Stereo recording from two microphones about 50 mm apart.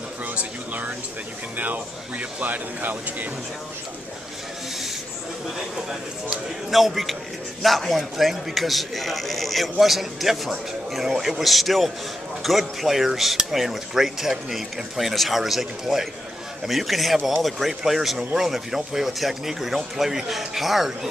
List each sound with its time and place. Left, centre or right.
0.4 s a sound: right
1.6 s speech: right
6.7 s a man's voice: centre